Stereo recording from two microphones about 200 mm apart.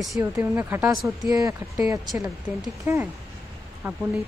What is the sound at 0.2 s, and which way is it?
Speech, 10° right (ahead or behind).